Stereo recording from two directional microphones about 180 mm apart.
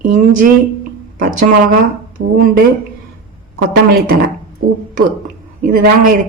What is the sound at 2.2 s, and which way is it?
Speech, 90° right.